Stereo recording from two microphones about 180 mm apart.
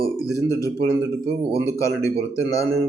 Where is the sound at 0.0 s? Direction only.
20° left (ahead or behind).